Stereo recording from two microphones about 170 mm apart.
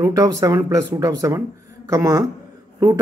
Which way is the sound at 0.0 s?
20° right (ahead or behind).